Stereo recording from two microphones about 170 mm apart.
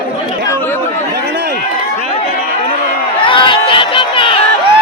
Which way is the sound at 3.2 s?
30° left (ahead or behind).